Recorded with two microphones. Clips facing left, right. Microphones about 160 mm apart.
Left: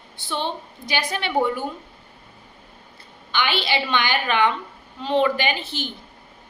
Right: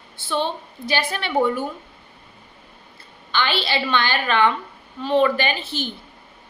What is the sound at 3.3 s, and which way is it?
A woman's voice, 15° left (ahead or behind).